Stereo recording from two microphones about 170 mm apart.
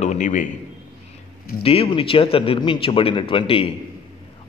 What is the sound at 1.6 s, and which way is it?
A man's voice, 35° left (ahead or behind).